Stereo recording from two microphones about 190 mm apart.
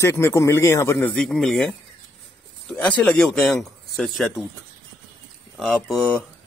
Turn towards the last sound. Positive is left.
turn(degrees=5)  # may be behind; listen again after turning